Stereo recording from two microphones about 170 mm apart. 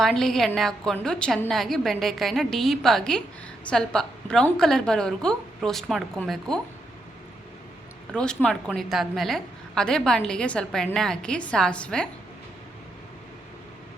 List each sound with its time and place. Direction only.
0.0 s a woman's voice: centre (ahead or behind)
8.1 s a woman's voice: 5° left (ahead or behind)